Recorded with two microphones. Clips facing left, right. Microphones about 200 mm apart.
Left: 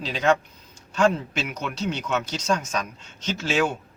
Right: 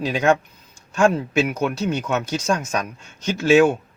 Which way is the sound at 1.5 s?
10° right (ahead or behind).